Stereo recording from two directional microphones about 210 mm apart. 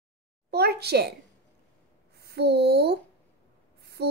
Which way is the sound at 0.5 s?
50° right (ahead or behind).